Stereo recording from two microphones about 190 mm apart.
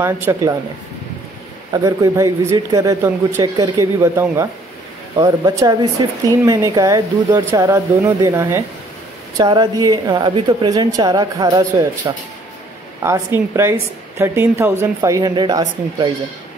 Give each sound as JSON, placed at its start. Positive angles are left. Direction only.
{"t": 0.0, "sound": "a woman's voice", "side_deg": -15}
{"t": 1.7, "sound": "a woman's voice", "side_deg": -15}